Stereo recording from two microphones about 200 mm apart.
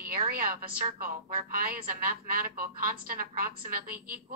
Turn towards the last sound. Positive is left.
turn(degrees=-45)  # may be behind; listen again after turning